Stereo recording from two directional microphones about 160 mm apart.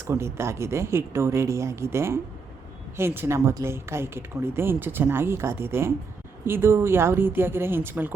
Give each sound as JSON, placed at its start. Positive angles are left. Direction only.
{"t": 0.1, "sound": "speech", "side_deg": -15}